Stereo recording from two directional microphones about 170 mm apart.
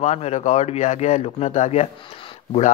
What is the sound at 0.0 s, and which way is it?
Speech, 40° left (ahead or behind).